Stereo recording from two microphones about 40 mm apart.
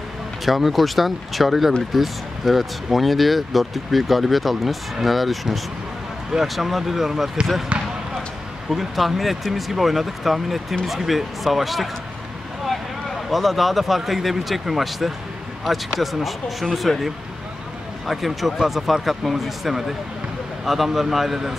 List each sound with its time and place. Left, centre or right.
0.5 s speech: centre
7.7 s basketball bounce: right
8.6 s speech: centre
13.3 s speech: centre